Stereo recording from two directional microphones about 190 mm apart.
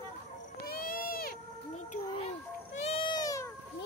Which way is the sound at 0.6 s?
50° left (ahead or behind).